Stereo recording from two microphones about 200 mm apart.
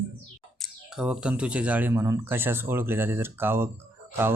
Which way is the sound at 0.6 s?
Centre (ahead or behind).